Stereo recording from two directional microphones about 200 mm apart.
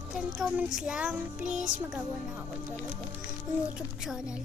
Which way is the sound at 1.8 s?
5° right (ahead or behind).